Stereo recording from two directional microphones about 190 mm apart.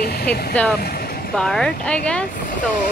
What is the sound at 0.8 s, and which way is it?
Vehicle, 50° left (ahead or behind).